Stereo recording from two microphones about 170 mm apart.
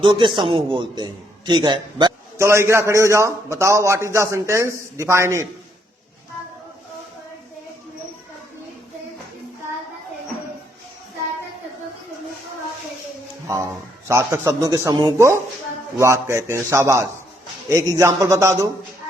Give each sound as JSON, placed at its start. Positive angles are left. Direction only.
{"t": 0.0, "sound": "a man's voice", "side_deg": -30}
{"t": 2.4, "sound": "a man's voice", "side_deg": -15}
{"t": 14.1, "sound": "a man's voice", "side_deg": -15}